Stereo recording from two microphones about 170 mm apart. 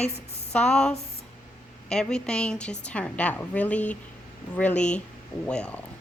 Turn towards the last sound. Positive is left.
turn(degrees=5)  # may be behind; listen again after turning